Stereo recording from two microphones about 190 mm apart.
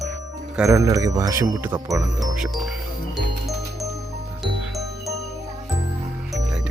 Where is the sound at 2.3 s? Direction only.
5° right (ahead or behind).